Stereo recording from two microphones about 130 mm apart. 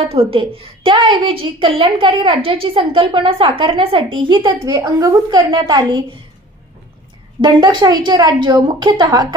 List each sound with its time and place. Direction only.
0.0 s a woman's voice: 45° right (ahead or behind)
4.6 s a woman's voice: 25° right (ahead or behind)
7.4 s a woman's voice: 35° right (ahead or behind)